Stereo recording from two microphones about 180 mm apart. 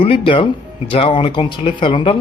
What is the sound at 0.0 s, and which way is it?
Speech, 30° left (ahead or behind).